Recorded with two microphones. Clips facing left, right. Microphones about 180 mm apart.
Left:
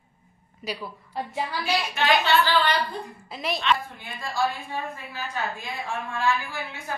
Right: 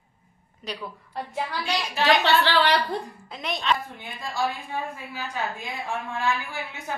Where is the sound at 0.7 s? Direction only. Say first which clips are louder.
Left 2 dB; 10° left (ahead or behind).